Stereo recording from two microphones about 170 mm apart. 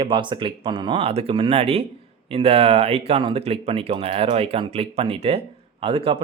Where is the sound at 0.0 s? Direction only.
30° right (ahead or behind).